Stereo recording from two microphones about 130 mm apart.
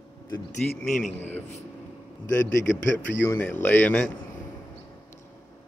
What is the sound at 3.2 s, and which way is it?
Speech, 20° left (ahead or behind).